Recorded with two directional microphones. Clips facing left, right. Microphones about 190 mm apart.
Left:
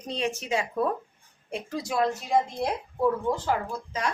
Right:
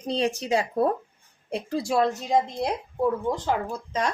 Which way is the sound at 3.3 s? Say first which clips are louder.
Even; 15° right (ahead or behind).